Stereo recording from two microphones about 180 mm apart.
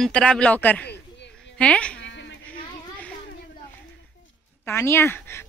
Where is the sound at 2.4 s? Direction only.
10° left (ahead or behind).